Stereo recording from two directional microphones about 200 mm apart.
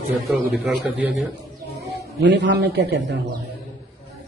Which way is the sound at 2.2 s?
60° right (ahead or behind).